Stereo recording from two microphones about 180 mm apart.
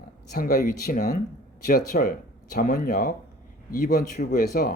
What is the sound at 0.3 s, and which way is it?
Speech, 55° left (ahead or behind).